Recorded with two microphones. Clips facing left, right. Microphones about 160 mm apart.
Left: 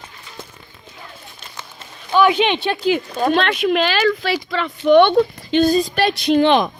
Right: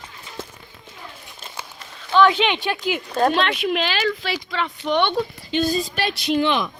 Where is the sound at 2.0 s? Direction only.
15° left (ahead or behind).